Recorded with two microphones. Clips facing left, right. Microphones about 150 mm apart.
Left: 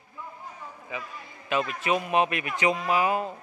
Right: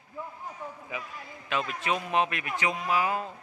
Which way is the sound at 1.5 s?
5° left (ahead or behind).